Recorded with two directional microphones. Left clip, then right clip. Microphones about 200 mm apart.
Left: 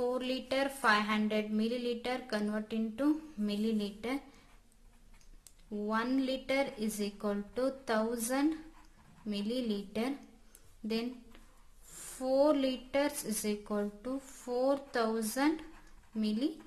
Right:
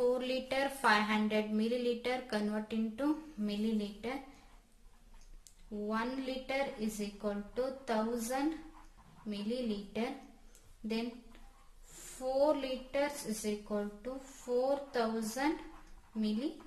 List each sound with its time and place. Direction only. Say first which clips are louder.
0.0 s speech: right 2 dB; 20° left (ahead or behind)
5.9 s speech: left 4 dB; 30° left (ahead or behind)
12.2 s speech: left 3 dB; 30° left (ahead or behind)